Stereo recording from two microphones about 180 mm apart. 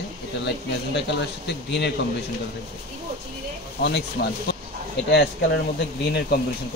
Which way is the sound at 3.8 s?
65° left (ahead or behind).